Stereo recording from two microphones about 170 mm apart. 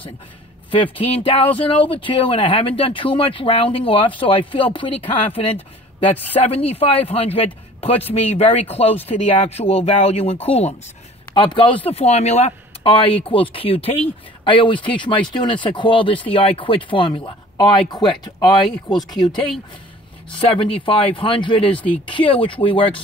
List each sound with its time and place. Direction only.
0.9 s speech: 35° left (ahead or behind)